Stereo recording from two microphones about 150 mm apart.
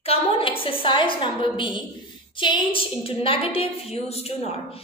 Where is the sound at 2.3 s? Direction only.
30° left (ahead or behind).